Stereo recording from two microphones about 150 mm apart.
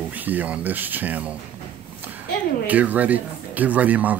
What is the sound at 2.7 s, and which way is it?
Speech, 10° right (ahead or behind).